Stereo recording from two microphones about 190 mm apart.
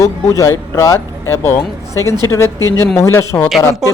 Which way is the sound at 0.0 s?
15° left (ahead or behind).